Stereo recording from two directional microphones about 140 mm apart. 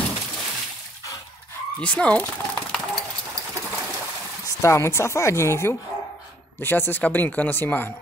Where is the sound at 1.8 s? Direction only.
10° left (ahead or behind).